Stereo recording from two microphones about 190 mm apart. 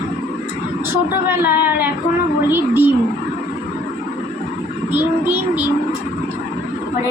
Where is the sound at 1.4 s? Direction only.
55° left (ahead or behind).